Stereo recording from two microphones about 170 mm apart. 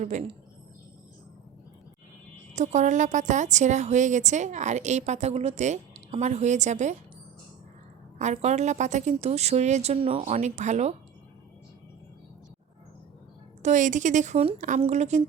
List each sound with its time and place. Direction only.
0.0 s a woman's voice: 45° right (ahead or behind)
2.5 s a woman's voice: 45° right (ahead or behind)
8.2 s a woman's voice: 40° right (ahead or behind)
13.6 s a woman's voice: 45° right (ahead or behind)